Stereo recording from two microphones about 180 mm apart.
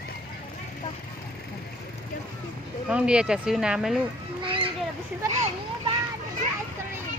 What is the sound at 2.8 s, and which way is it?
Speech, 5° right (ahead or behind).